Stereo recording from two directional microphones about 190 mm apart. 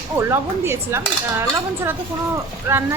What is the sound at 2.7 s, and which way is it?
Speech, 15° right (ahead or behind).